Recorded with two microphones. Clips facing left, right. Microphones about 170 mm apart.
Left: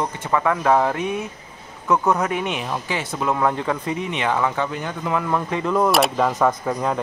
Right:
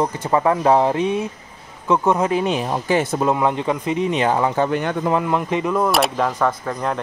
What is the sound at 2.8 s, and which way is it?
Speech, 45° right (ahead or behind).